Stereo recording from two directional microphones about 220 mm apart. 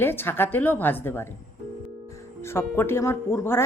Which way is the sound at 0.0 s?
10° left (ahead or behind).